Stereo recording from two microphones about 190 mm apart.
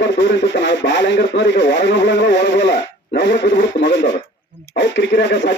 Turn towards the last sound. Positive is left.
turn(degrees=65)  # may be behind; listen again after turning